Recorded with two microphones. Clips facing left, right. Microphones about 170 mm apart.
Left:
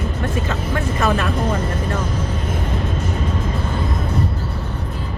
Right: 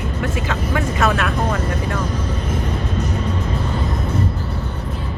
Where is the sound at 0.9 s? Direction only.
85° right.